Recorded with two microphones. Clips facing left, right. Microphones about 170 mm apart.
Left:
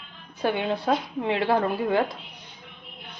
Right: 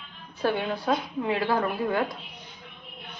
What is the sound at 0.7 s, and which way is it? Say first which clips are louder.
A woman's voice: left 2 dB; 25° left (ahead or behind).